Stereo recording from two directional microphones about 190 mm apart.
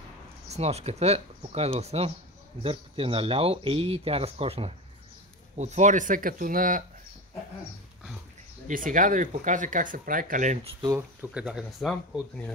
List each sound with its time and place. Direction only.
0.5 s speech: 35° right (ahead or behind)
8.6 s speech: 45° right (ahead or behind)
10.8 s speech: 20° right (ahead or behind)
11.3 s speech: 5° right (ahead or behind)